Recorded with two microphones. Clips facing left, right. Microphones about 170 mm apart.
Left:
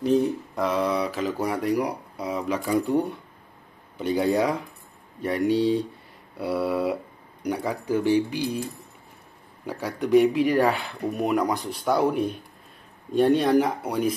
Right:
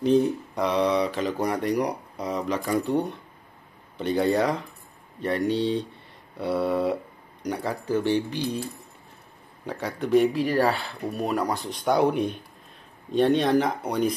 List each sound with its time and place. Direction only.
0.0 s speech: 5° left (ahead or behind)
9.7 s speech: 10° left (ahead or behind)
11.9 s speech: 5° left (ahead or behind)